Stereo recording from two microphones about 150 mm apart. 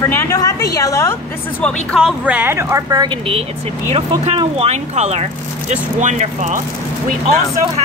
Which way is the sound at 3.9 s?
40° right (ahead or behind).